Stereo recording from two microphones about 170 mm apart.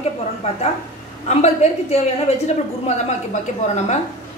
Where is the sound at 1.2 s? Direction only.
40° left (ahead or behind).